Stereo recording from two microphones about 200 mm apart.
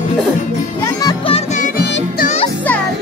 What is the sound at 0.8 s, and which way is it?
Music, 20° left (ahead or behind).